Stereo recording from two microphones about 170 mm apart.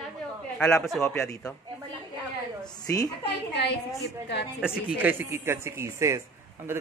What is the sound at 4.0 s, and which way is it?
Speech, 90° left.